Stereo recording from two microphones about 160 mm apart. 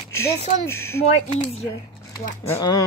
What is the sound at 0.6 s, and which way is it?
Speech, 15° left (ahead or behind).